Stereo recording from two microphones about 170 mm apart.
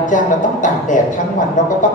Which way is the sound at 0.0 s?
50° left (ahead or behind).